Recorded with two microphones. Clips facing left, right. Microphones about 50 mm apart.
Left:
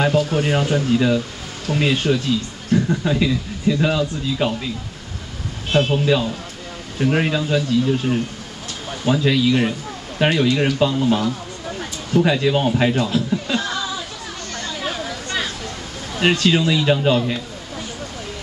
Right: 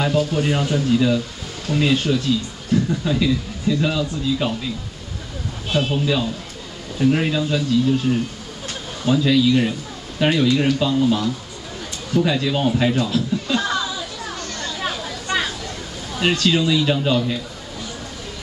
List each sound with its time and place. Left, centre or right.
0.4 s speech: centre
5.7 s a man's voice: left
6.0 s speech: centre
13.6 s a sound: centre
15.2 s a sound: centre
16.1 s speech: centre